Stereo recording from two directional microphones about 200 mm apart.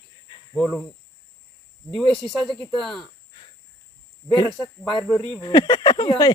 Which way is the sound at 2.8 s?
Centre (ahead or behind).